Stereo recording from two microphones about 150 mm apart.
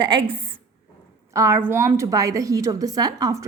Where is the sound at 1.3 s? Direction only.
20° right (ahead or behind).